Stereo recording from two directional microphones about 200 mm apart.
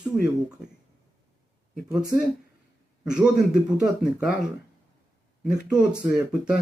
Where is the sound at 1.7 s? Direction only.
5° right (ahead or behind).